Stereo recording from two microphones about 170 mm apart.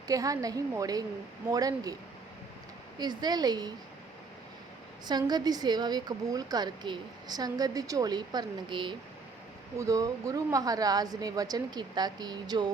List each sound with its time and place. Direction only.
0.1 s a woman's voice: 20° right (ahead or behind)
3.0 s a woman's voice: 25° right (ahead or behind)
5.0 s a woman's voice: 25° right (ahead or behind)